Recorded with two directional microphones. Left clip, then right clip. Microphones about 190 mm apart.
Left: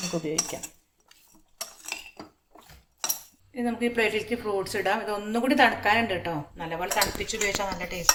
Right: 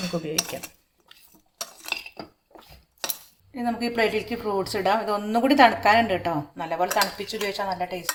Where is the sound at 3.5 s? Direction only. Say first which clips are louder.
Right 1 dB; 40° right (ahead or behind).